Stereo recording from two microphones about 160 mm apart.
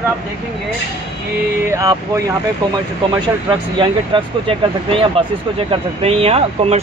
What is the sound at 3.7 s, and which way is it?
Speech, 35° right (ahead or behind).